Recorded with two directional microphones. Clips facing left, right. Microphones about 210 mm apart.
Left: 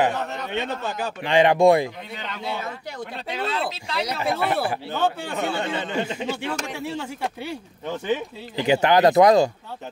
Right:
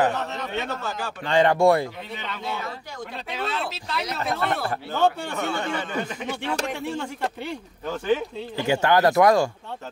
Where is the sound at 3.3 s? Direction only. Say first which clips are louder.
Left 3 dB; centre (ahead or behind).